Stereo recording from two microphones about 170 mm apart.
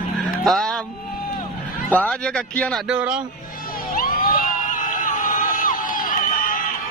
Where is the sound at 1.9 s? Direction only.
10° left (ahead or behind).